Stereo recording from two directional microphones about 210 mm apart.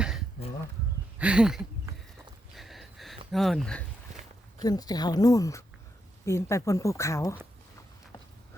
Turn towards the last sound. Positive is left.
turn(degrees=15)  # may be behind; listen again after turning